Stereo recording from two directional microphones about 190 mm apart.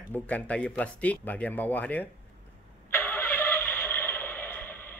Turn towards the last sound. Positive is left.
turn(degrees=10)  # may be behind; listen again after turning